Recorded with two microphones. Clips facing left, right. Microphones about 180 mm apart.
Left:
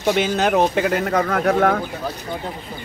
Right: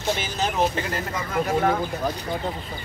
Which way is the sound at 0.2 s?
65° left (ahead or behind).